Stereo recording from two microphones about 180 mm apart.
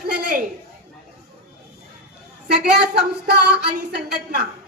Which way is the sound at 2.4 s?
65° right (ahead or behind).